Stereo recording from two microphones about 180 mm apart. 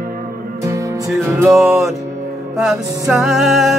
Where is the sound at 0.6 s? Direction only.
15° right (ahead or behind).